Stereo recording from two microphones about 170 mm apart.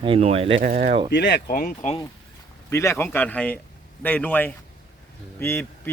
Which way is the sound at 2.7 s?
15° left (ahead or behind).